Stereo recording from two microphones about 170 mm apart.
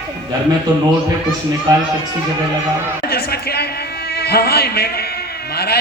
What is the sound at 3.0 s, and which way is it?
A man's voice, 65° left (ahead or behind).